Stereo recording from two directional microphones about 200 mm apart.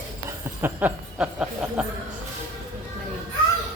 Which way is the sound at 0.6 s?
10° right (ahead or behind).